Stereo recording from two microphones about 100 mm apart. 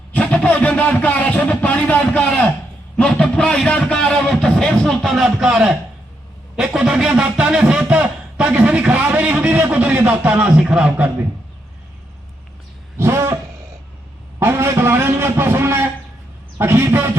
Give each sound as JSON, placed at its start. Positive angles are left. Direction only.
{"t": 0.1, "sound": "a man's voice", "side_deg": 15}
{"t": 13.0, "sound": "a sound", "side_deg": -25}
{"t": 14.3, "sound": "a man's voice", "side_deg": -25}